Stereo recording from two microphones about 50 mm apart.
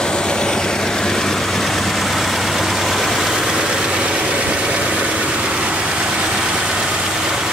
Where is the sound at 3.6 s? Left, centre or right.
Centre.